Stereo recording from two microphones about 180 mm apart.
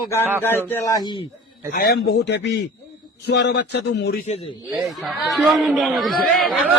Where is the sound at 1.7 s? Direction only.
60° left (ahead or behind).